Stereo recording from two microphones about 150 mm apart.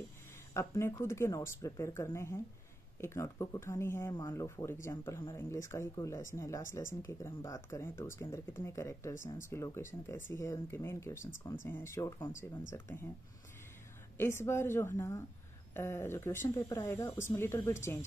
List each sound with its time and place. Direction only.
0.6 s speech: 20° left (ahead or behind)
14.1 s speech: 15° left (ahead or behind)